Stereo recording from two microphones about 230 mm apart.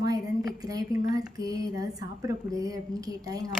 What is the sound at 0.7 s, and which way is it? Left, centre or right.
A woman's voice, centre.